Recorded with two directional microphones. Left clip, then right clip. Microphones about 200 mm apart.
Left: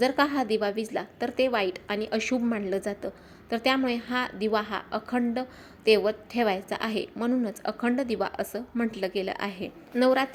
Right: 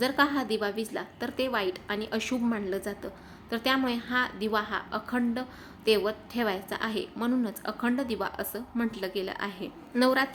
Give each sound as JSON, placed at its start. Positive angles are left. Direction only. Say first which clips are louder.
{"t": 0.0, "sound": "a woman's voice", "louder": "left 2 dB", "side_deg": 20}